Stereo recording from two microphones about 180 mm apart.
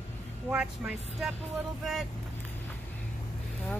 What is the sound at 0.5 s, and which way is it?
Speech, 5° right (ahead or behind).